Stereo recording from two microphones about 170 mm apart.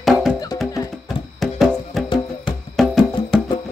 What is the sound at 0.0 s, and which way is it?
Music, centre (ahead or behind).